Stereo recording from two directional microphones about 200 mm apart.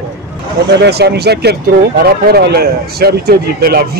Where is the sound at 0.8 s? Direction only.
55° right (ahead or behind).